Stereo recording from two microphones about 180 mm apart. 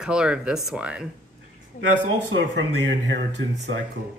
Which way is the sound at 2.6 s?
90° right.